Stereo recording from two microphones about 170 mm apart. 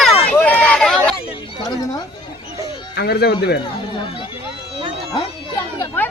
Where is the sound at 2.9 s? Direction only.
70° left (ahead or behind).